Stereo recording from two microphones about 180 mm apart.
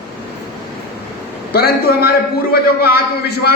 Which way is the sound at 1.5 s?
60° left (ahead or behind).